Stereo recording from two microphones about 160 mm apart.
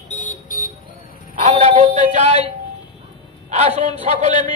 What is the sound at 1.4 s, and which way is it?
Speech, 45° right (ahead or behind).